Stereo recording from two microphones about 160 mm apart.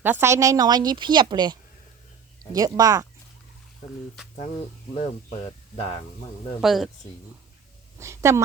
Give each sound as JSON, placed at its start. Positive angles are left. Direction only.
{"t": 0.0, "sound": "speech", "side_deg": -15}
{"t": 2.6, "sound": "speech", "side_deg": -25}
{"t": 6.6, "sound": "speech", "side_deg": 0}
{"t": 7.9, "sound": "a woman's voice", "side_deg": -15}